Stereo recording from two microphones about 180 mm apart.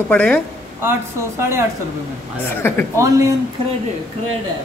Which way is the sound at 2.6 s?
10° left (ahead or behind).